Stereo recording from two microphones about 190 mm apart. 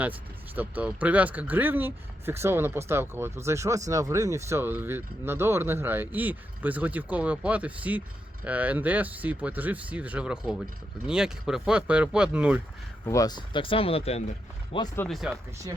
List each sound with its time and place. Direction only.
0.0 s speech: 10° right (ahead or behind)
13.1 s speech: 20° left (ahead or behind)
14.9 s speech: 5° left (ahead or behind)